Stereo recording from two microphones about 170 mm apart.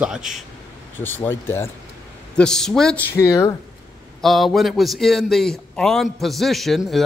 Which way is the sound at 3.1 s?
20° left (ahead or behind).